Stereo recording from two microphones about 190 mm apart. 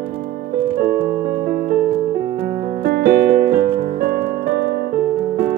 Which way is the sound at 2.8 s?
55° right (ahead or behind).